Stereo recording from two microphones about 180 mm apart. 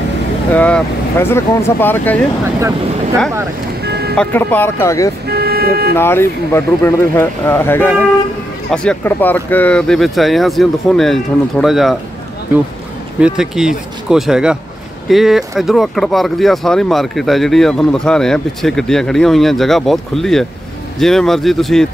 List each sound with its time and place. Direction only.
0.5 s speech: 5° left (ahead or behind)
3.8 s vehicle: 65° right (ahead or behind)
4.2 s speech: 10° left (ahead or behind)
5.2 s vehicle: 60° right (ahead or behind)
5.9 s speech: 15° left (ahead or behind)
13.2 s speech: 5° right (ahead or behind)